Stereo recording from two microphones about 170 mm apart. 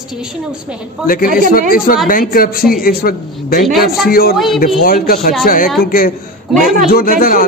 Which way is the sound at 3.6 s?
Centre (ahead or behind).